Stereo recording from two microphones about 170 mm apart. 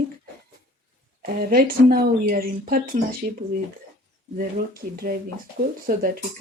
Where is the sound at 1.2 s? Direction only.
60° right (ahead or behind).